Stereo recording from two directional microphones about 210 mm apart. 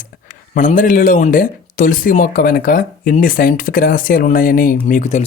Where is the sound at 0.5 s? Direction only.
40° left (ahead or behind).